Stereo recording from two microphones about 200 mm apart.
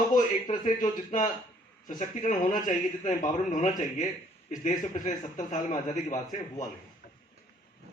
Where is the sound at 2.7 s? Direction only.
40° left (ahead or behind).